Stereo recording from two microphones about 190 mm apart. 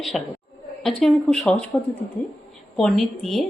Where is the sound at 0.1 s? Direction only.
Centre (ahead or behind).